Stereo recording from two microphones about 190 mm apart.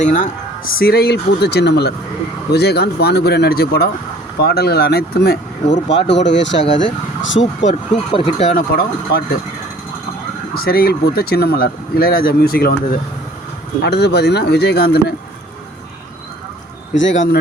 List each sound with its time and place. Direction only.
0.0 s speech: 45° left (ahead or behind)
0.8 s speech: 55° left (ahead or behind)
6.1 s speech: 70° left (ahead or behind)
7.7 s speech: 35° left (ahead or behind)
10.5 s speech: 50° left (ahead or behind)
16.9 s speech: 80° left